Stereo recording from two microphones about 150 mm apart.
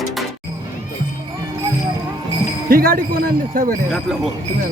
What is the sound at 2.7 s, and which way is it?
Speech, 75° right (ahead or behind).